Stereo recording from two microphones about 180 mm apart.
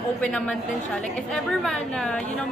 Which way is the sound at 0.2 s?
5° left (ahead or behind).